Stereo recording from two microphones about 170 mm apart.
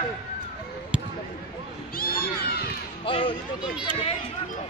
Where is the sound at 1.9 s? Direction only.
60° left (ahead or behind).